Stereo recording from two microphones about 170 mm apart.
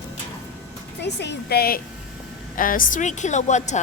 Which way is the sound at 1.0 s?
85° left.